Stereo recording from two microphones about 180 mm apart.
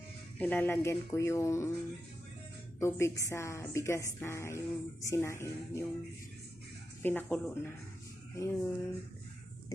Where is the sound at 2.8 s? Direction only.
15° left (ahead or behind).